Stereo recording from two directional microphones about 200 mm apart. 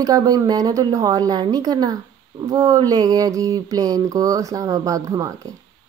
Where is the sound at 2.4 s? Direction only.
15° right (ahead or behind).